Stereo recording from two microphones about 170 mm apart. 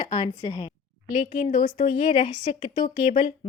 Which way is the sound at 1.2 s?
45° left (ahead or behind).